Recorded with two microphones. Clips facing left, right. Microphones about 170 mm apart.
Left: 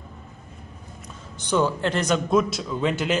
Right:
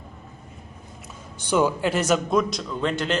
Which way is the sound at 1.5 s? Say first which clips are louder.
Right 1 dB; 10° right (ahead or behind).